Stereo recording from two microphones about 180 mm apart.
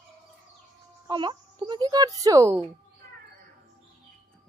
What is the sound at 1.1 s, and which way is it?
A child's voice, 25° right (ahead or behind).